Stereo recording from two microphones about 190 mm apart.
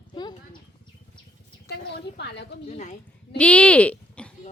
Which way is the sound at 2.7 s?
35° left (ahead or behind).